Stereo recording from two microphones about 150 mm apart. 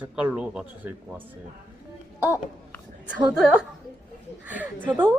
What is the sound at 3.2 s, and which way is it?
Speech, 5° right (ahead or behind).